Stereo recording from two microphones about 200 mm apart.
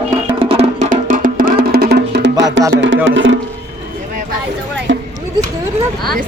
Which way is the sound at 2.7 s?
65° right (ahead or behind).